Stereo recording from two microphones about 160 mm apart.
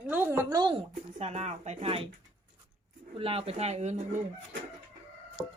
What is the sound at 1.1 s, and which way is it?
Speech, 45° right (ahead or behind).